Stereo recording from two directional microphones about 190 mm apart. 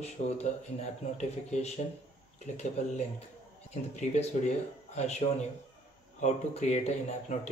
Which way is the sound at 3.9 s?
35° left (ahead or behind).